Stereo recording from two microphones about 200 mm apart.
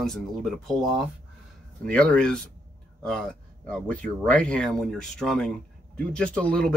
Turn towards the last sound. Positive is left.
turn(degrees=5)  # may be behind; listen again after turning